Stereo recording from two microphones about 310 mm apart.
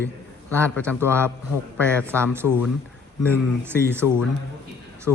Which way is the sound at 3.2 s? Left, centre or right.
Centre.